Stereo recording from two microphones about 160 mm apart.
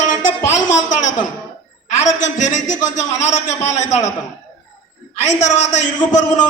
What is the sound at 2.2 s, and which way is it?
A man's voice, 50° left (ahead or behind).